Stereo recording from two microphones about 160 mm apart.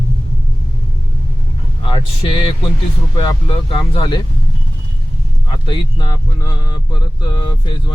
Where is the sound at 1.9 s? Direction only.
30° left (ahead or behind).